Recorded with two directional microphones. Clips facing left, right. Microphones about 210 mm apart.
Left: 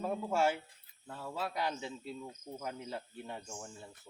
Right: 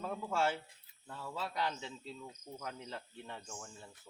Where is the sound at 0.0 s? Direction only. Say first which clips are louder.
Left 3 dB; 15° left (ahead or behind).